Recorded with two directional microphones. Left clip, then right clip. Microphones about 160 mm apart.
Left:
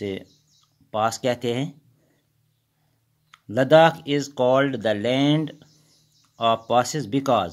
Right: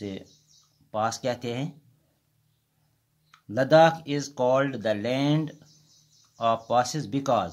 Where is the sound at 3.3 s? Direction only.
30° left (ahead or behind).